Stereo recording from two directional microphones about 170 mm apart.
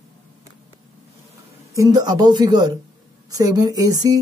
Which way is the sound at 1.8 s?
20° right (ahead or behind).